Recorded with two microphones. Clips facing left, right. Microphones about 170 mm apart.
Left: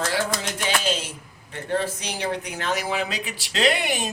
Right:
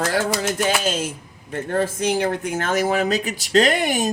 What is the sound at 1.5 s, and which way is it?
Speech, 45° right (ahead or behind).